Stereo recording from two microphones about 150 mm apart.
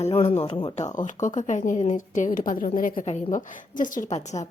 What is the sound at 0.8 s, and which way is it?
A woman's voice, 55° left (ahead or behind).